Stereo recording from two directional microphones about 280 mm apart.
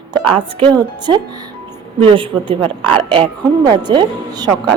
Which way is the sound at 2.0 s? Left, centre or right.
Centre.